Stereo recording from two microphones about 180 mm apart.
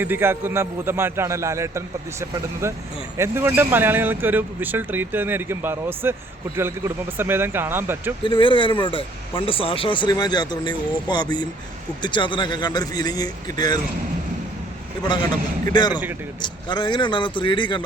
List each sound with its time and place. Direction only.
0.0 s speech: 10° right (ahead or behind)
8.2 s speech: 30° left (ahead or behind)
15.0 s speech: 25° left (ahead or behind)